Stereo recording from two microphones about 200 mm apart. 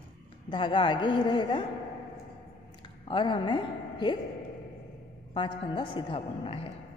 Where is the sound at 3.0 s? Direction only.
25° left (ahead or behind).